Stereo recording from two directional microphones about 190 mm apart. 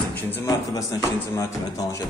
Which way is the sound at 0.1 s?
10° left (ahead or behind).